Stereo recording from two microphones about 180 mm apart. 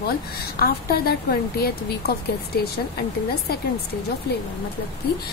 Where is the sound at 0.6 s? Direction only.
55° left (ahead or behind).